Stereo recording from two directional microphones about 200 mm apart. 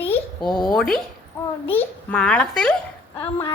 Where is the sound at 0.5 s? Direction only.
20° left (ahead or behind).